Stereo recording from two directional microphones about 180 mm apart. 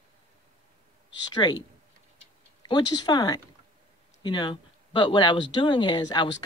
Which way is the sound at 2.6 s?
25° left (ahead or behind).